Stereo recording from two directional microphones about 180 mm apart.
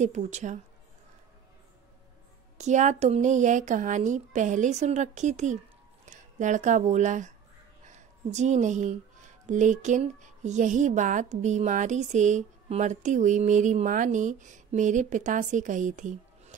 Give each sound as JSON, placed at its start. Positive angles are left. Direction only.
{"t": 0.0, "sound": "speech", "side_deg": -40}
{"t": 2.5, "sound": "speech", "side_deg": -40}